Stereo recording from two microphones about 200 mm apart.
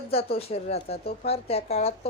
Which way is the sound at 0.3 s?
30° left (ahead or behind).